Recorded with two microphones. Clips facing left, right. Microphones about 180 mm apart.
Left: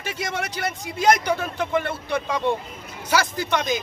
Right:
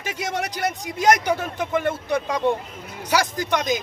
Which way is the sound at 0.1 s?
15° right (ahead or behind).